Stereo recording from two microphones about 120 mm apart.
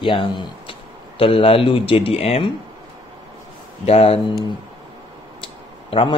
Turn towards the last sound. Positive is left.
turn(degrees=50)  # may be behind; listen again after turning